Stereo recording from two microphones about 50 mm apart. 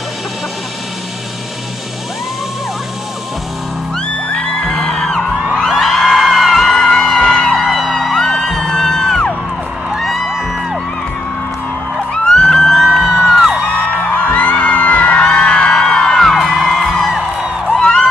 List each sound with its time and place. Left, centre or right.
4.3 s music: centre
6.1 s music: centre
12.1 s music: centre
13.8 s music: left
15.2 s music: centre
17.6 s crowd: centre